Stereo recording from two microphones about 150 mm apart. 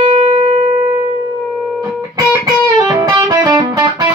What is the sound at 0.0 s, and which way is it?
Shofar, 40° right (ahead or behind).